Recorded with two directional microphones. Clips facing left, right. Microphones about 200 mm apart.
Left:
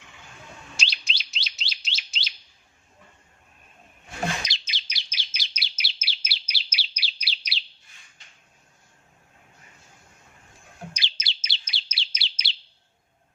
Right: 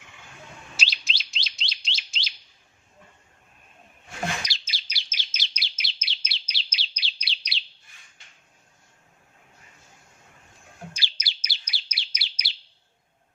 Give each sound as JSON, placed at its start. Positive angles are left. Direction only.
{"t": 0.8, "sound": "chirp", "side_deg": 0}
{"t": 4.4, "sound": "chirp", "side_deg": 20}
{"t": 5.5, "sound": "chirp", "side_deg": 5}
{"t": 10.9, "sound": "bird", "side_deg": 20}
{"t": 11.4, "sound": "chirp", "side_deg": 25}